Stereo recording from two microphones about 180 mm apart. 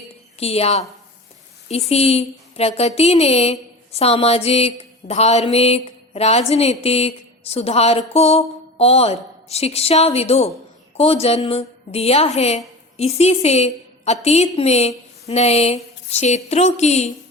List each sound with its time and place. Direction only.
0.3 s a woman's voice: 35° left (ahead or behind)